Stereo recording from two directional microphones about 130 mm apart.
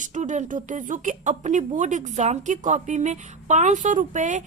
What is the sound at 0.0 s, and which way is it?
Speech, 70° right (ahead or behind).